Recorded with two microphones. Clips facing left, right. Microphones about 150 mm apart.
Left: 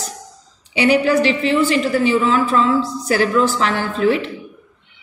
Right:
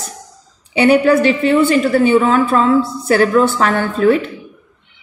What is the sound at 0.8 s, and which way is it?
A woman's voice, 55° right (ahead or behind).